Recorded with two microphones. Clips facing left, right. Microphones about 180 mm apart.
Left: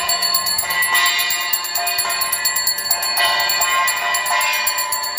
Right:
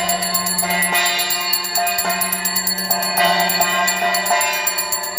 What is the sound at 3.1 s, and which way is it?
Music, 45° right (ahead or behind).